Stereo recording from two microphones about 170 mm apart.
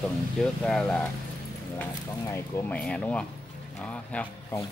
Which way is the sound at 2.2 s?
15° left (ahead or behind).